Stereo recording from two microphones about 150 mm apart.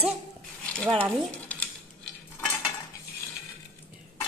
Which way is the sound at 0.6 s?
5° left (ahead or behind).